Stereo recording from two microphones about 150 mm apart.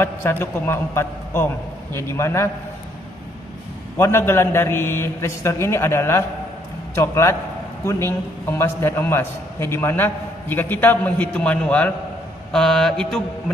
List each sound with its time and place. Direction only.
0.0 s a man's voice: 15° left (ahead or behind)
4.0 s a man's voice: 15° left (ahead or behind)
12.5 s mantra: 5° left (ahead or behind)